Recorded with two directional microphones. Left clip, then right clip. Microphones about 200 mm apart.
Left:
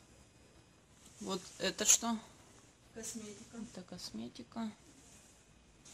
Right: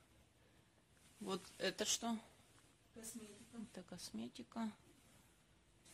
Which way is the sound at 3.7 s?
20° right (ahead or behind).